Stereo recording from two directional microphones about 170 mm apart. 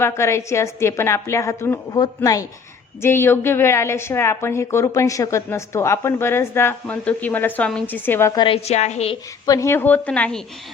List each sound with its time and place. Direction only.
0.0 s a woman's voice: 15° left (ahead or behind)
8.4 s a woman's voice: 35° left (ahead or behind)
9.5 s a woman's voice: 15° left (ahead or behind)